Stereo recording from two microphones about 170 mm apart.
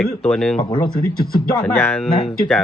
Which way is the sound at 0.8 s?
60° left (ahead or behind).